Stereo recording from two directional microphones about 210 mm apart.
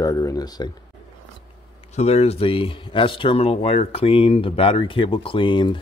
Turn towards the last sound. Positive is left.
turn(degrees=20)  # may be behind; listen again after turning